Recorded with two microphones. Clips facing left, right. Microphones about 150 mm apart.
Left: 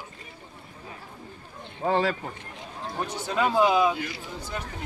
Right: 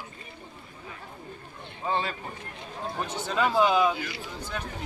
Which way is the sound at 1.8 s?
75° left (ahead or behind).